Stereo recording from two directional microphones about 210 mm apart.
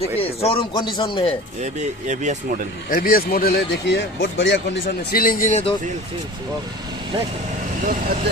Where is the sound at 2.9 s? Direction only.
45° left (ahead or behind); by 4.8 s 60° left (ahead or behind).